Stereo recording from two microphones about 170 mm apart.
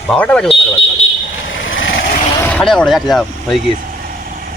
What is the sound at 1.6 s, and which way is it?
Vehicle, 90° left.